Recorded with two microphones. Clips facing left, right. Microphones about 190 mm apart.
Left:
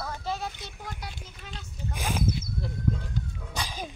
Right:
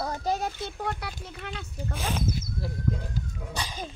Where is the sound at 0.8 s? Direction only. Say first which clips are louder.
Right 7 dB; 65° right (ahead or behind).